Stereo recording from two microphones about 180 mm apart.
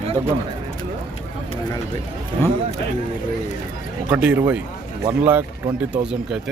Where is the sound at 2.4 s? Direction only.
15° left (ahead or behind).